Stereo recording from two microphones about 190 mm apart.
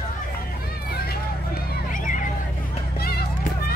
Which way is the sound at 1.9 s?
45° left (ahead or behind).